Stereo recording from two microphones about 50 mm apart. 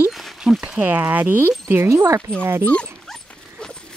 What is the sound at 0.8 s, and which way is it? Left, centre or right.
Speech, right.